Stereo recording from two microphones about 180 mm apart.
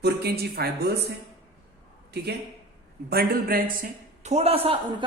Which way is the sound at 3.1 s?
60° right (ahead or behind).